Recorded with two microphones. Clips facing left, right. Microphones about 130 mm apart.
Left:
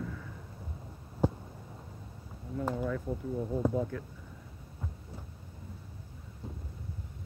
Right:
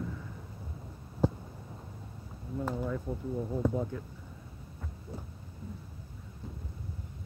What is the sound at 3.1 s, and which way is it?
Speech, 5° left (ahead or behind).